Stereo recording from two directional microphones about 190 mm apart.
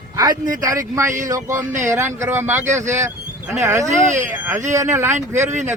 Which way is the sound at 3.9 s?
40° right (ahead or behind).